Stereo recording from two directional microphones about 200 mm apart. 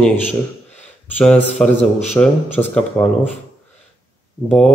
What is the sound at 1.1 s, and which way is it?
A man's voice, 5° left (ahead or behind).